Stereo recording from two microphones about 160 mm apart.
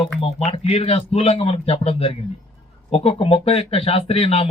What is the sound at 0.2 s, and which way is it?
Speech, 35° left (ahead or behind).